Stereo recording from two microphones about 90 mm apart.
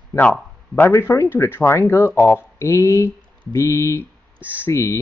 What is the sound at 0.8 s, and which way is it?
Speech, 30° left (ahead or behind).